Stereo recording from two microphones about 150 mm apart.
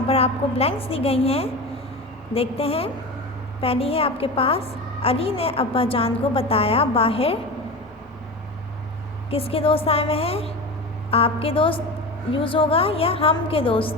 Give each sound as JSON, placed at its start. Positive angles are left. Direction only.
{"t": 0.1, "sound": "a woman's voice", "side_deg": 40}
{"t": 9.3, "sound": "a woman's voice", "side_deg": 40}